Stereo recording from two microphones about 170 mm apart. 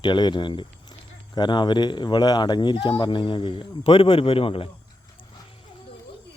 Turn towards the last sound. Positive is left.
turn(degrees=35)  # may be behind; listen again after turning